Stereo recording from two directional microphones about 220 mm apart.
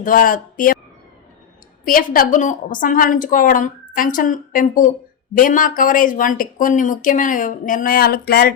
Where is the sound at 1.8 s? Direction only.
40° left (ahead or behind).